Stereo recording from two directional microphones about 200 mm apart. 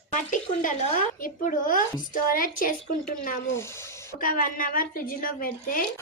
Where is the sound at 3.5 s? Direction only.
15° left (ahead or behind).